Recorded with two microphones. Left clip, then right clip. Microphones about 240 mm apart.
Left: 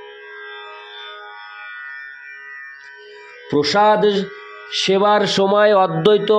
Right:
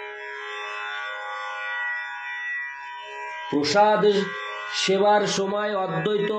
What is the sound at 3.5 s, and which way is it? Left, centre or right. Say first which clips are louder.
Speech: left 5 dB; left.